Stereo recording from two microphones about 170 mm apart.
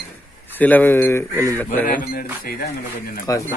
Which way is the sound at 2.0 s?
60° left (ahead or behind).